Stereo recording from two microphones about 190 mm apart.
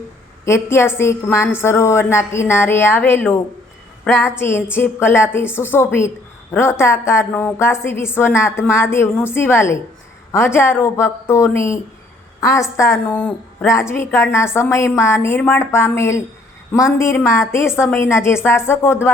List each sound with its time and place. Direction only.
0.4 s a woman's voice: 15° left (ahead or behind)